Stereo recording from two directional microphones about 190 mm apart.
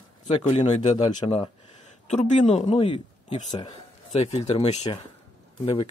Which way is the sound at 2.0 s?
35° left (ahead or behind).